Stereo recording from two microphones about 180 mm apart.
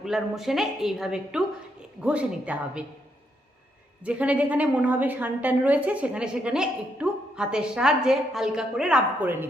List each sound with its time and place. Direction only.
0.0 s a woman's voice: centre (ahead or behind)
4.0 s a woman's voice: 5° right (ahead or behind)